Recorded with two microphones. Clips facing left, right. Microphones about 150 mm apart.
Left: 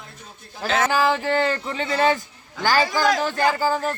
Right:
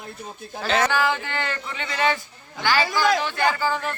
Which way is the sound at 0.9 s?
35° left (ahead or behind).